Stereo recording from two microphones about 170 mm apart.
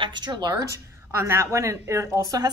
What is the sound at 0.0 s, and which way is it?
A woman's voice, 25° right (ahead or behind).